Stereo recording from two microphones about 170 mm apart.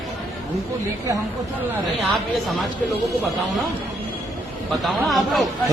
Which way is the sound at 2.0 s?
Centre (ahead or behind).